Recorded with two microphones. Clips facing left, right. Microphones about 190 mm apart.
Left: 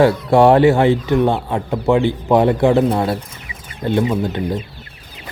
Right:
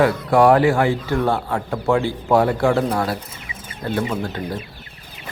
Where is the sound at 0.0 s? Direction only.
25° left (ahead or behind).